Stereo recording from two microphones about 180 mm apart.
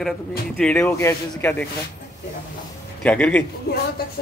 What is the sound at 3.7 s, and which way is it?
Speech, 60° left (ahead or behind).